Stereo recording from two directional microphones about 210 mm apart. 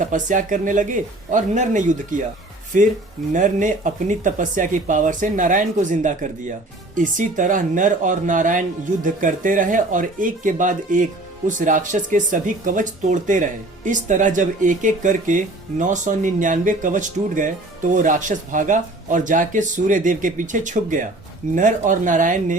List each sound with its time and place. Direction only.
0.0 s speech: 40° right (ahead or behind)